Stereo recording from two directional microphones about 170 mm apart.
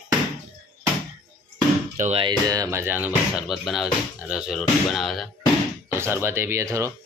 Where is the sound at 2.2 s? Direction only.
25° right (ahead or behind); by 5.2 s centre (ahead or behind).